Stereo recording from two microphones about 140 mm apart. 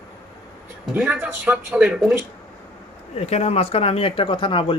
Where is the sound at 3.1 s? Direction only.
50° left (ahead or behind).